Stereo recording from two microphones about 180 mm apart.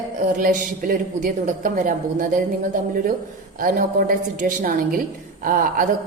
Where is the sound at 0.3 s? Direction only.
50° right (ahead or behind).